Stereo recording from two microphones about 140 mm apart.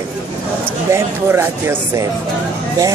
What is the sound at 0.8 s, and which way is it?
Speech, 20° right (ahead or behind).